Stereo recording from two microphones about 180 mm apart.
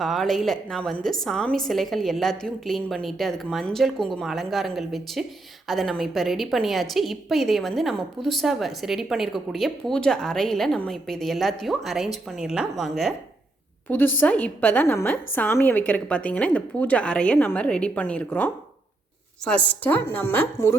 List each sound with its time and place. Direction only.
0.0 s a woman's voice: centre (ahead or behind)
14.2 s a woman's voice: 10° left (ahead or behind)